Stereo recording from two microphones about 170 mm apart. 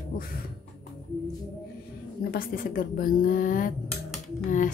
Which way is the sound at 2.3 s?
60° left (ahead or behind).